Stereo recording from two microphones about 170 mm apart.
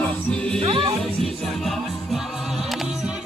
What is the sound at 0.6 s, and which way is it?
Music, 30° right (ahead or behind).